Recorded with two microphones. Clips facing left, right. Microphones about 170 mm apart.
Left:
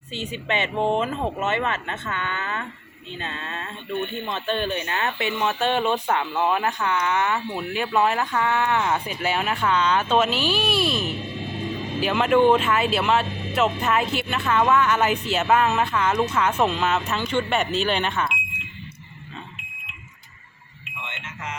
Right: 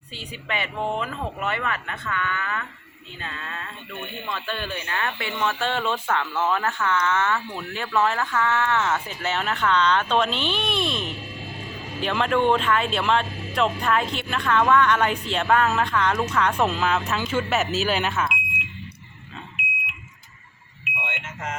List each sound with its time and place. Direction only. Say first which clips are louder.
0.1 s speech: left 5 dB; 25° left (ahead or behind); by 18.3 s centre (ahead or behind)